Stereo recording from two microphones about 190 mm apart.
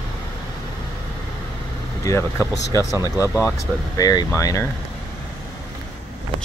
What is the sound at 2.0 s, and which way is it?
Speech, 15° left (ahead or behind).